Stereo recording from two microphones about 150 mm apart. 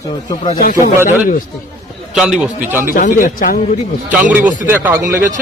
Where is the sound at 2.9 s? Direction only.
70° left (ahead or behind).